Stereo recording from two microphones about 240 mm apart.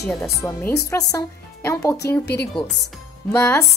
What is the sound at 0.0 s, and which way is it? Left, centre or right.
Speech, centre.